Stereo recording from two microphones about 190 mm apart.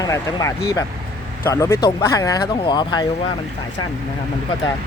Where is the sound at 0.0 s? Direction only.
20° left (ahead or behind).